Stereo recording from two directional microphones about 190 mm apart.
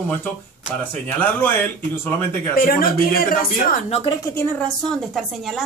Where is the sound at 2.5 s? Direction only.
50° left (ahead or behind).